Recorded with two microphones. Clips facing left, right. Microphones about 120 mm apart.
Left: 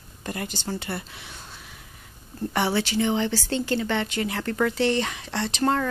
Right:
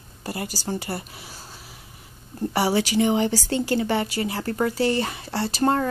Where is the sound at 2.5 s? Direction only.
10° right (ahead or behind).